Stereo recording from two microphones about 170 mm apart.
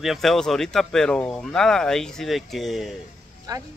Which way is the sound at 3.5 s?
20° right (ahead or behind).